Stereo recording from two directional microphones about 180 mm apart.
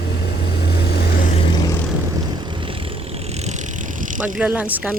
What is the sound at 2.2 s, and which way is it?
Vehicle, 25° right (ahead or behind).